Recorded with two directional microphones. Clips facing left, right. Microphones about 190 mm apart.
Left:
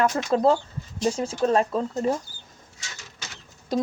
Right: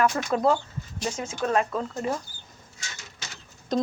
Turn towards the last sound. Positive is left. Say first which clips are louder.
# even
turn(degrees=10)  # may be behind; listen again after turning